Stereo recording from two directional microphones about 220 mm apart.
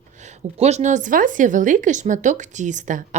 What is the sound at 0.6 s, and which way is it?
A woman's voice, 30° right (ahead or behind).